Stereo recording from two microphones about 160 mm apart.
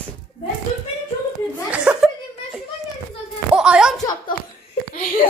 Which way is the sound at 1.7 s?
5° right (ahead or behind).